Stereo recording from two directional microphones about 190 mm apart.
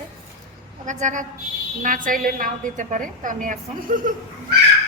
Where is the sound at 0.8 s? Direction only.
40° right (ahead or behind).